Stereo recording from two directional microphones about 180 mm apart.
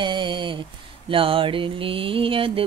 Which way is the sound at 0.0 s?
25° right (ahead or behind).